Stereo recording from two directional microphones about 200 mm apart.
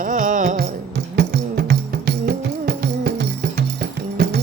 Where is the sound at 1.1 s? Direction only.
50° right (ahead or behind).